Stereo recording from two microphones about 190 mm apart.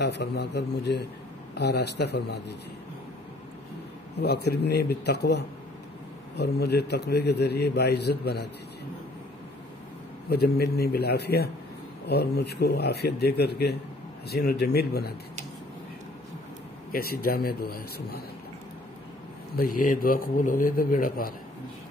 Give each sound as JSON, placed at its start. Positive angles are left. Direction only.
{"t": 0.0, "sound": "a man's voice", "side_deg": 65}
{"t": 4.2, "sound": "a man's voice", "side_deg": 60}
{"t": 10.3, "sound": "a man's voice", "side_deg": 55}
{"t": 16.9, "sound": "a man's voice", "side_deg": 50}
{"t": 19.5, "sound": "a man's voice", "side_deg": 50}